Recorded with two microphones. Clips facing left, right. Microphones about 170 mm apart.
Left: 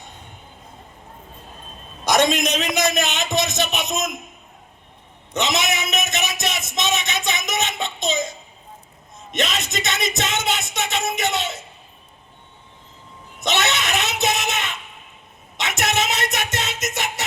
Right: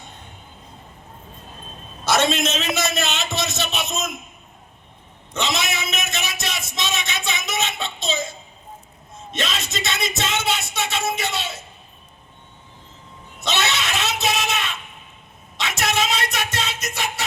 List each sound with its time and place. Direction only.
2.0 s a man's voice: 15° left (ahead or behind)
5.3 s a man's voice: 20° left (ahead or behind)
13.4 s a sound: 20° left (ahead or behind)